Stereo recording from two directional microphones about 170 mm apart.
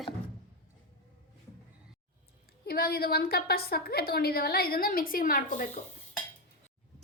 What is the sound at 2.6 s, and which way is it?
A woman's voice, 65° left (ahead or behind).